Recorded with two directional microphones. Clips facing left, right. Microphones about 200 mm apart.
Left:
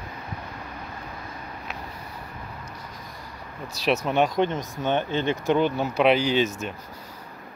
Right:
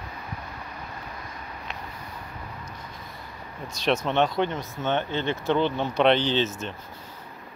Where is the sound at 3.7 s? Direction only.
5° left (ahead or behind).